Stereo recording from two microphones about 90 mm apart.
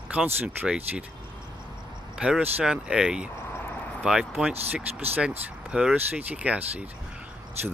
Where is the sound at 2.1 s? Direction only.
10° right (ahead or behind).